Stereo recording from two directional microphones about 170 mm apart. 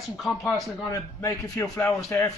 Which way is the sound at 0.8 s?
15° left (ahead or behind).